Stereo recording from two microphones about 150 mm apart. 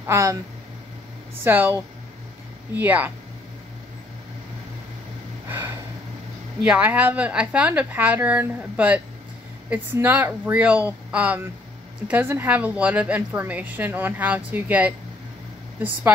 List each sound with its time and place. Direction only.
0.0 s speech: 20° right (ahead or behind)
1.4 s a woman's voice: 15° right (ahead or behind)
5.5 s a sound: 15° right (ahead or behind)
6.6 s a woman's voice: 10° right (ahead or behind)